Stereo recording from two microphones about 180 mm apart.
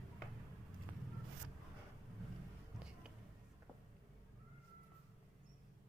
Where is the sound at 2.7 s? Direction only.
5° right (ahead or behind).